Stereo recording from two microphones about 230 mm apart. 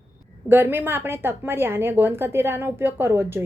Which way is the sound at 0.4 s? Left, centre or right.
Centre.